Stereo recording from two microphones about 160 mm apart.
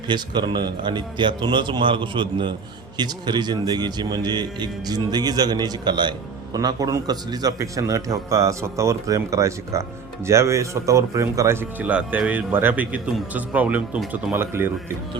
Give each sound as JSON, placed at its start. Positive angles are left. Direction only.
{"t": 0.1, "sound": "speech", "side_deg": -30}